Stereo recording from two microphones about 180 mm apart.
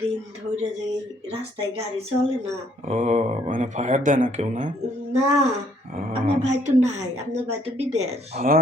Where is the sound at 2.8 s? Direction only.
40° right (ahead or behind).